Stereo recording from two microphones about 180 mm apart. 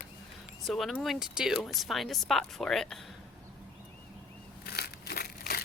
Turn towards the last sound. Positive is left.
turn(degrees=60)  # may be behind; listen again after turning